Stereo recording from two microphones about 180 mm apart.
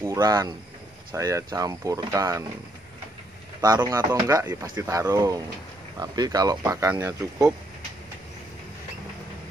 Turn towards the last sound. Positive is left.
turn(degrees=-15)  # may be behind; listen again after turning